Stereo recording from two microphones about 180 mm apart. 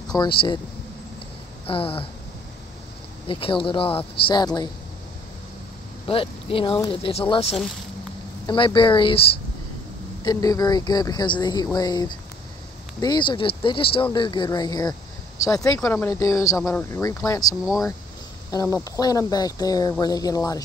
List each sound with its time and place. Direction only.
0.1 s speech: 25° left (ahead or behind)
1.7 s speech: 30° left (ahead or behind)
3.3 s speech: 30° left (ahead or behind)
6.0 s speech: 30° left (ahead or behind)
10.2 s speech: 20° left (ahead or behind)